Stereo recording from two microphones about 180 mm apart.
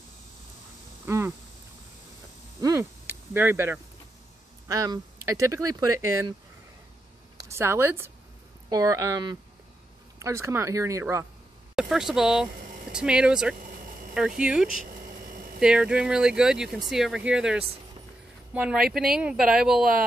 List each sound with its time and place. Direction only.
1.0 s a sound: 10° right (ahead or behind)
2.6 s speech: 15° right (ahead or behind)
7.4 s speech: 15° right (ahead or behind)
11.7 s speech: centre (ahead or behind)
14.7 s a sound: 45° right (ahead or behind)
15.6 s speech: 5° right (ahead or behind)